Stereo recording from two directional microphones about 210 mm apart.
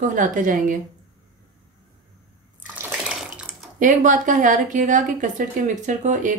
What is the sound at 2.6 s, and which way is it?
Bathtub, 5° right (ahead or behind).